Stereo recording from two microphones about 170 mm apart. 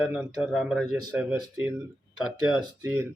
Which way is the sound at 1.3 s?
15° right (ahead or behind).